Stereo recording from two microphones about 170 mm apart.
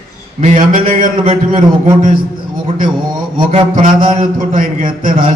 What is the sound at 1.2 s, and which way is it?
A man's voice, 30° right (ahead or behind).